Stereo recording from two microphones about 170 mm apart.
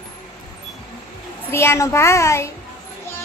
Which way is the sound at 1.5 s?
15° left (ahead or behind).